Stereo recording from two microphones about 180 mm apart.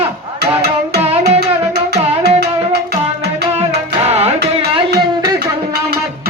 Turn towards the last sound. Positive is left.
turn(degrees=-35)  # may be behind; listen again after turning